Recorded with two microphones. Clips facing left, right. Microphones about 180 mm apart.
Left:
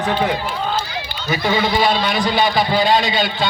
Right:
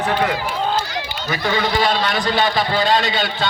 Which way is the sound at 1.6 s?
5° left (ahead or behind).